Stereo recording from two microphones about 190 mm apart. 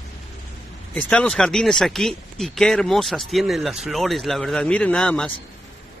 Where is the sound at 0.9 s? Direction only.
5° left (ahead or behind).